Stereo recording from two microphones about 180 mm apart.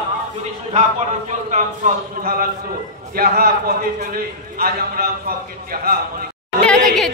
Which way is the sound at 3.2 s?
55° right (ahead or behind).